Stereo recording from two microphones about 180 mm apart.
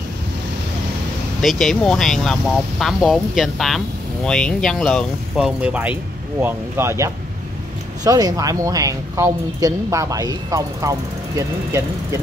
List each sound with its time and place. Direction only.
1.4 s a woman's voice: centre (ahead or behind); by 12.2 s 15° right (ahead or behind)